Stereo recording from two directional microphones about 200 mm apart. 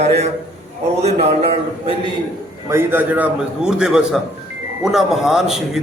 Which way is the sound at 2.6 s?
10° right (ahead or behind).